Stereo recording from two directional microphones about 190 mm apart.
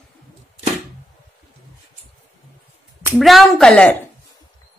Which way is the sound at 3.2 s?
Centre (ahead or behind).